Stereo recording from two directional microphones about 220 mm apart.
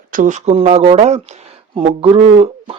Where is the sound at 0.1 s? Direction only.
35° right (ahead or behind).